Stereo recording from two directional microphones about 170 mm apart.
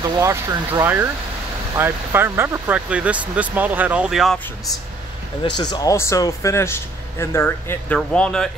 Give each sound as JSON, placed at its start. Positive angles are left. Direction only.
{"t": 0.0, "sound": "speech", "side_deg": -20}
{"t": 5.6, "sound": "speech", "side_deg": 25}